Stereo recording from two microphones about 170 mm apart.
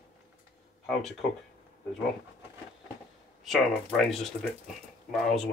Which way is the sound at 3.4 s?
Centre (ahead or behind).